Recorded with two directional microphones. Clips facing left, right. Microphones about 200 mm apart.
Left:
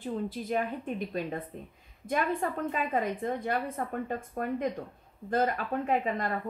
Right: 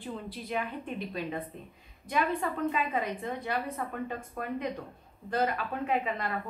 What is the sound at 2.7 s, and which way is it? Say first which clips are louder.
A woman's voice: left 1 dB; 45° left (ahead or behind).